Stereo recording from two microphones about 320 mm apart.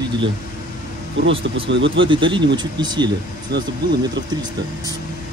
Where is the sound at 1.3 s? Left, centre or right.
Centre.